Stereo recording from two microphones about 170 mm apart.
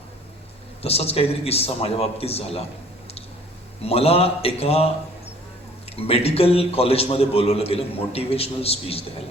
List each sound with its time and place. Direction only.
0.8 s a man's voice: 35° left (ahead or behind)
3.8 s a man's voice: 35° left (ahead or behind)
6.0 s a man's voice: 35° left (ahead or behind)